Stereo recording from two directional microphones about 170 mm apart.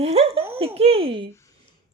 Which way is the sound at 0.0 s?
35° right (ahead or behind).